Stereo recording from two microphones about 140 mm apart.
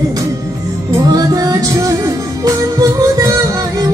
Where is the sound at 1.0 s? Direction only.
30° right (ahead or behind).